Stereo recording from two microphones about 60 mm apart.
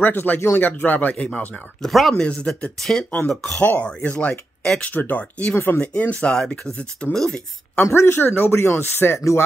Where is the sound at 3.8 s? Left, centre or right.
Left.